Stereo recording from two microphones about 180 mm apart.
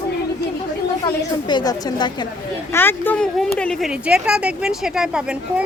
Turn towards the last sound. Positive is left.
turn(degrees=-5)  # may be behind; listen again after turning